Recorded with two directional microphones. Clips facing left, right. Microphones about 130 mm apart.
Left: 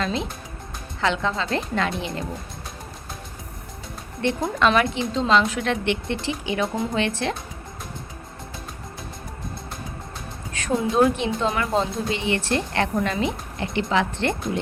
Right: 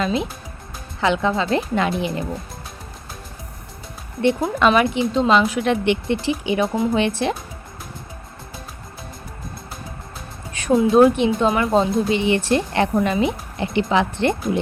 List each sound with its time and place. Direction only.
0.0 s speech: 10° right (ahead or behind)
4.2 s speech: 15° right (ahead or behind)
10.7 s a woman's voice: 20° right (ahead or behind)